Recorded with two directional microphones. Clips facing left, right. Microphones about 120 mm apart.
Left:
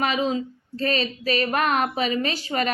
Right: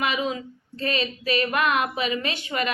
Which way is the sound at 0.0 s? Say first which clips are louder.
Left 3 dB; 35° left (ahead or behind).